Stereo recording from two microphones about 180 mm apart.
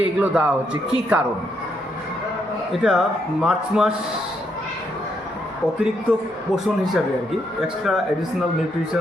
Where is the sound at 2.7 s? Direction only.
Centre (ahead or behind).